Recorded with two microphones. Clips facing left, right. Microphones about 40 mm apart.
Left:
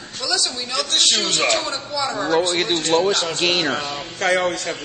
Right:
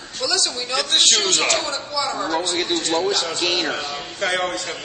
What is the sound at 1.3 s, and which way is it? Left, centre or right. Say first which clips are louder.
A woman's voice: left 1 dB; centre.